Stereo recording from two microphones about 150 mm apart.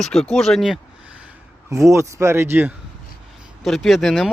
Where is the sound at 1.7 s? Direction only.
20° right (ahead or behind).